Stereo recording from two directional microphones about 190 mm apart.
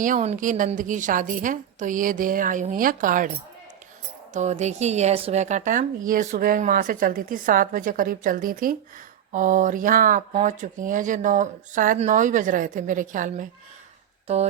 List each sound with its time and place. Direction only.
0.0 s speech: 40° right (ahead or behind)
4.4 s speech: 35° right (ahead or behind)